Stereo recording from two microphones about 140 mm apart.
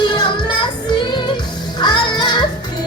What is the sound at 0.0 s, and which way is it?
Music, 35° left (ahead or behind).